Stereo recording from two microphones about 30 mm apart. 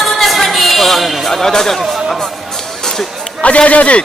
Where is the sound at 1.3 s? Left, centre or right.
Centre.